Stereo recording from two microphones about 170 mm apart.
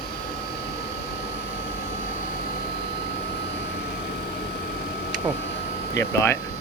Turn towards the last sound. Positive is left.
turn(degrees=15)  # may be behind; listen again after turning